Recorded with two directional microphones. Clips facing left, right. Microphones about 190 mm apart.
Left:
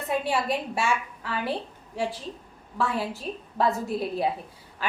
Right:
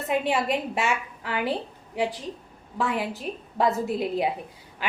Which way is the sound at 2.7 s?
15° right (ahead or behind).